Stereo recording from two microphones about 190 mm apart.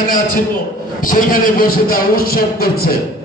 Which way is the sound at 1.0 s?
45° left (ahead or behind).